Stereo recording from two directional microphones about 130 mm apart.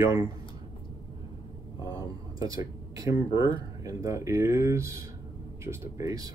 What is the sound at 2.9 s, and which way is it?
Speech, 25° right (ahead or behind).